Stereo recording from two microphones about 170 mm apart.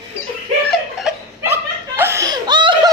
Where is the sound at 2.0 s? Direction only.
15° right (ahead or behind).